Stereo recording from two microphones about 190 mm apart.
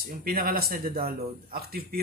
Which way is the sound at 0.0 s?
50° right (ahead or behind).